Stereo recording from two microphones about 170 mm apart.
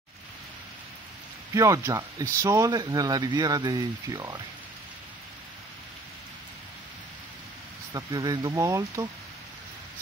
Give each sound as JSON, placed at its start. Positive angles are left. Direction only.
{"t": 1.5, "sound": "speech", "side_deg": -20}
{"t": 7.9, "sound": "speech", "side_deg": -20}